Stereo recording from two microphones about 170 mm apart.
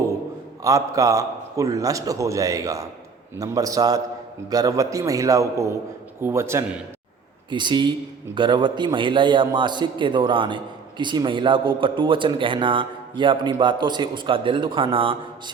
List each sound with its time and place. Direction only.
0.6 s a man's voice: 20° right (ahead or behind)
7.5 s a man's voice: 25° right (ahead or behind)